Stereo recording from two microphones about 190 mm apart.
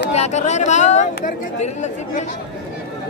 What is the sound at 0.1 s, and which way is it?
Speech, 35° left (ahead or behind).